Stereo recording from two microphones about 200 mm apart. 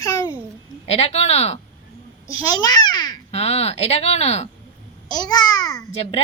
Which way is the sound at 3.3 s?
30° left (ahead or behind).